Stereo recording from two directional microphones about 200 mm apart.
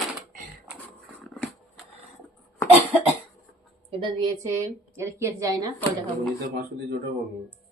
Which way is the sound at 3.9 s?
25° right (ahead or behind).